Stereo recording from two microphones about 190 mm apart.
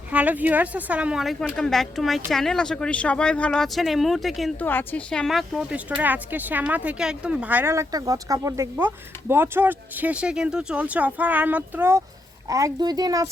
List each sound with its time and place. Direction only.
0.1 s speech: 5° right (ahead or behind)
4.6 s speech: 10° left (ahead or behind); by 13.2 s 20° right (ahead or behind)